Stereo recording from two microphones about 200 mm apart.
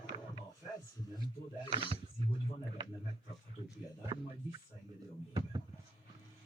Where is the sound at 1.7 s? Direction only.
30° right (ahead or behind).